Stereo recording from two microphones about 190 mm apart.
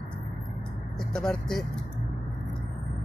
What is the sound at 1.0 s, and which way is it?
Speech, 5° left (ahead or behind).